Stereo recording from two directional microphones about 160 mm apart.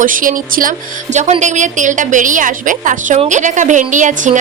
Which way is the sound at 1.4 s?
50° right (ahead or behind).